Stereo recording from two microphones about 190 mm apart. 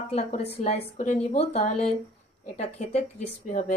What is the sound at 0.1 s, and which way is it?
A woman's voice, 35° left (ahead or behind).